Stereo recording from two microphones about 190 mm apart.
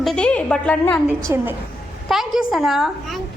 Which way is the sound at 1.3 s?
10° right (ahead or behind).